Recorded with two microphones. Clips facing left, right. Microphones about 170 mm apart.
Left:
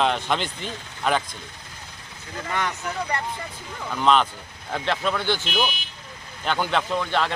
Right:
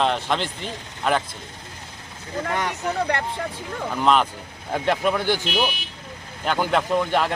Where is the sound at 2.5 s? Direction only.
40° right (ahead or behind).